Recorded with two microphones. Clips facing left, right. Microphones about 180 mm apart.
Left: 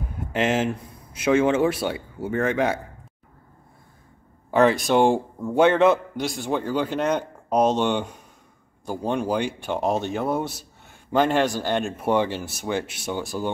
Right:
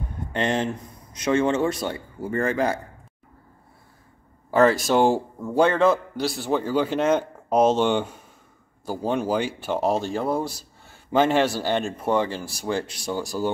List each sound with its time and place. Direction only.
0.3 s a man's voice: 5° left (ahead or behind)
4.5 s speech: centre (ahead or behind)
5.8 s a man's voice: 20° left (ahead or behind)
6.5 s speech: 10° right (ahead or behind)
7.2 s a sound: 10° left (ahead or behind)
7.7 s a man's voice: 10° right (ahead or behind)
11.1 s speech: 10° right (ahead or behind)
12.0 s a man's voice: 10° left (ahead or behind)